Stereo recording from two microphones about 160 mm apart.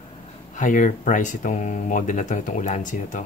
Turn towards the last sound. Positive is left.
turn(degrees=50)  # may be behind; listen again after turning